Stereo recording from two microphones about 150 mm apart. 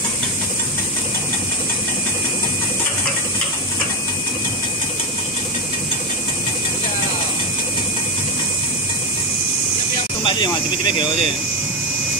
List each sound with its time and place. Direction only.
10.2 s speech: 30° left (ahead or behind)